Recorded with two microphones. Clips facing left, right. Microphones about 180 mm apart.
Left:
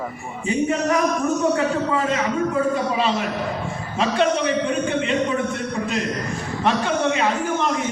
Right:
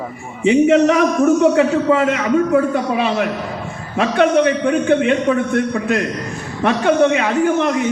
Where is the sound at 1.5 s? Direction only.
75° right (ahead or behind).